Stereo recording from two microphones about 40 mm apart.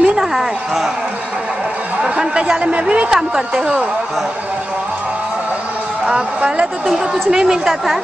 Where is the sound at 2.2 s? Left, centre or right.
Right.